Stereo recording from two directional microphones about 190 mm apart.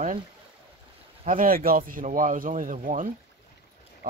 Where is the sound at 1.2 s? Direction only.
50° right (ahead or behind).